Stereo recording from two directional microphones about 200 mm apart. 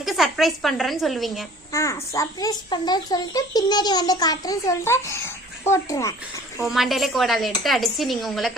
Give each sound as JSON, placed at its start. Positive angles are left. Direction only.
{"t": 0.0, "sound": "a woman's voice", "side_deg": 0}
{"t": 1.7, "sound": "a child's voice", "side_deg": 15}
{"t": 6.6, "sound": "a woman's voice", "side_deg": 0}